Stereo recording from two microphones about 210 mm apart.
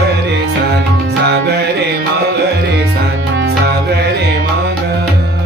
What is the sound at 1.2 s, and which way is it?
Music, 50° right (ahead or behind).